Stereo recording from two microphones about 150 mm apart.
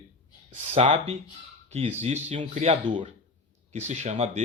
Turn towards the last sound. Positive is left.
turn(degrees=-45)  # may be behind; listen again after turning